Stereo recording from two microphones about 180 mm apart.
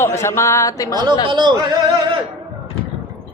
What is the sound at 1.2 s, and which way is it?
Speech, 25° right (ahead or behind).